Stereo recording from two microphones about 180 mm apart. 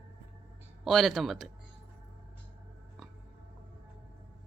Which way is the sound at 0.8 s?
Centre (ahead or behind).